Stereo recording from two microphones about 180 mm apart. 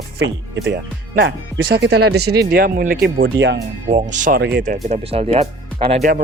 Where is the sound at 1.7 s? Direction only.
65° right (ahead or behind).